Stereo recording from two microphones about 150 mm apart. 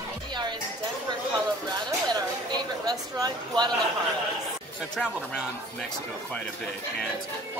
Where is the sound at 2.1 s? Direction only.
25° right (ahead or behind).